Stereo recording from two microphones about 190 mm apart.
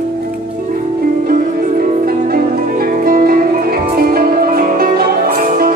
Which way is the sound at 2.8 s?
50° right (ahead or behind).